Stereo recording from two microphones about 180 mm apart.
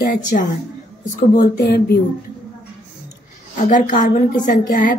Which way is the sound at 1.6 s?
60° left (ahead or behind).